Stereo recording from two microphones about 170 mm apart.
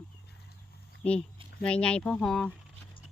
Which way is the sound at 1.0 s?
5° left (ahead or behind).